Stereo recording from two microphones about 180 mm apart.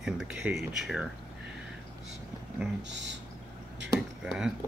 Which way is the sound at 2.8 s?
80° right.